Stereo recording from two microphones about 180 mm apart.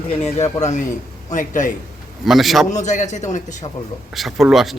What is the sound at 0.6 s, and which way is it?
A man's voice, 40° left (ahead or behind).